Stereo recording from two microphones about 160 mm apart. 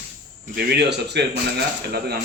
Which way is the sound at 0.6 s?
90° right.